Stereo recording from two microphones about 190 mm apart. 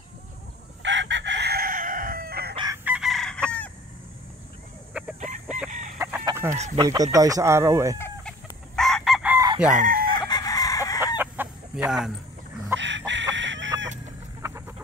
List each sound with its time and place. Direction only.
0.8 s crowing: 70° right (ahead or behind); by 2.5 s 50° right (ahead or behind)
2.5 s chicken: 25° right (ahead or behind)
2.8 s chicken: 5° right (ahead or behind)
5.2 s chicken: 40° right (ahead or behind)
5.9 s chicken: 15° right (ahead or behind)
6.5 s speech: 35° right (ahead or behind)
6.8 s speech: 15° right (ahead or behind)
8.0 s chicken: 5° left (ahead or behind)
9.7 s chicken: 45° right (ahead or behind)
10.1 s chicken: 20° left (ahead or behind)
11.1 s chicken: 10° right (ahead or behind)
12.7 s chicken: 70° right (ahead or behind)
14.4 s chicken: 15° right (ahead or behind)